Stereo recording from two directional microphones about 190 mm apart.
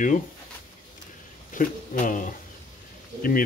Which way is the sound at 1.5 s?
45° left (ahead or behind).